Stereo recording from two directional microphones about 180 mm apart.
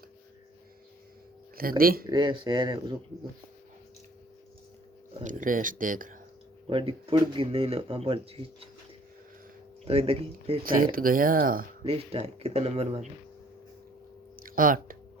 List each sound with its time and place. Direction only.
1.8 s speech: 55° right (ahead or behind)
2.0 s speech: 25° right (ahead or behind)
5.2 s speech: 45° right (ahead or behind)
6.7 s speech: 30° right (ahead or behind)
9.8 s speech: 35° right (ahead or behind)
10.6 s speech: 50° right (ahead or behind)
11.9 s speech: 35° right (ahead or behind)
14.3 s a sound: 50° right (ahead or behind)